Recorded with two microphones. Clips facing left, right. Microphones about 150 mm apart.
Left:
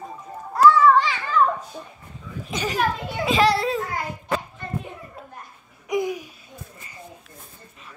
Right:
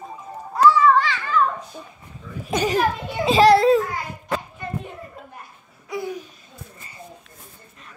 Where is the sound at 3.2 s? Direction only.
30° right (ahead or behind).